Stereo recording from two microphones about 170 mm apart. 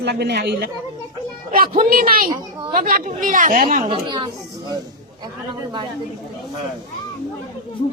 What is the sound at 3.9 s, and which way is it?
A woman's voice, 30° right (ahead or behind).